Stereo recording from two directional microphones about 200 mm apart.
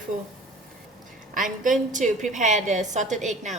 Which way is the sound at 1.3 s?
40° right (ahead or behind).